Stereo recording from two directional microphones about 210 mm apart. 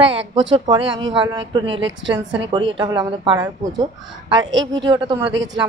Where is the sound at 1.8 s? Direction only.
60° right (ahead or behind).